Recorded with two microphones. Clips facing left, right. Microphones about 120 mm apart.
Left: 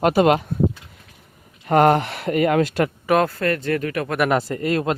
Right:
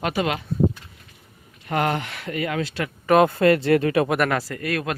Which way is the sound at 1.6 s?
45° left (ahead or behind).